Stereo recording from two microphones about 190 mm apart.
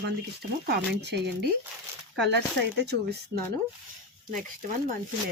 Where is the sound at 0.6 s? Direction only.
60° right (ahead or behind).